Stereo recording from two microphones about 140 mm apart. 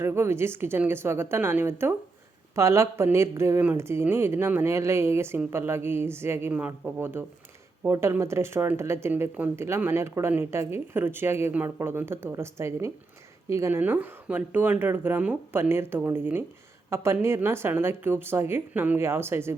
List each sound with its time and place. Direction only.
0.0 s speech: 20° right (ahead or behind)